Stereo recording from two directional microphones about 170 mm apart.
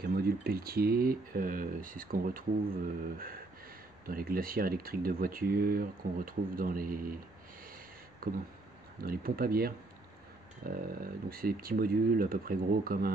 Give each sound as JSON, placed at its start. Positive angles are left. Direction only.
{"t": 0.0, "sound": "speech", "side_deg": -60}
{"t": 4.0, "sound": "speech", "side_deg": -60}
{"t": 8.2, "sound": "a sound", "side_deg": -60}
{"t": 9.0, "sound": "speech", "side_deg": -60}